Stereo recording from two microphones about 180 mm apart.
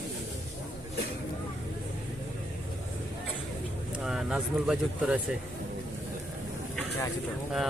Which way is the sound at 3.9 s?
5° right (ahead or behind).